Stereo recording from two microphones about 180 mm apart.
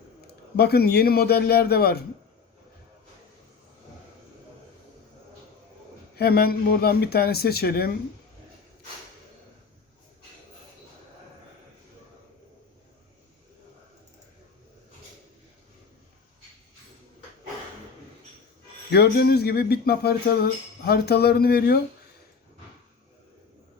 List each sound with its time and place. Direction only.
0.5 s speech: 60° left (ahead or behind)
6.1 s speech: 60° left (ahead or behind)
18.9 s speech: 65° left (ahead or behind)